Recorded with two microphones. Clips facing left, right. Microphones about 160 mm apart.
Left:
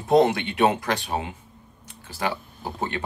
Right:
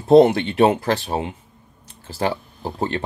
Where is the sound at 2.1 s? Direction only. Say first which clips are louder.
Right 5 dB; 35° right (ahead or behind).